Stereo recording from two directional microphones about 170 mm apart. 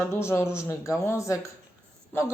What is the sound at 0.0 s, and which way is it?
Speech, 15° left (ahead or behind).